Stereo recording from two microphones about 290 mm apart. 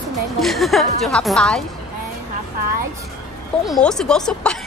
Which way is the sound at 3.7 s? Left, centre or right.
Centre.